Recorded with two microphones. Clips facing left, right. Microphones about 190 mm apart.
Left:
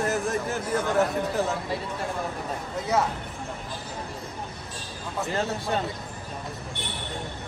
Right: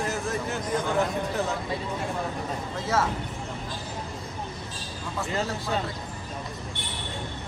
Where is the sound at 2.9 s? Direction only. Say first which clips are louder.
Left 1 dB; 20° left (ahead or behind).